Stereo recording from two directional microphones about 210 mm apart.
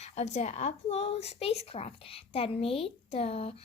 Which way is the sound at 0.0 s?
30° left (ahead or behind).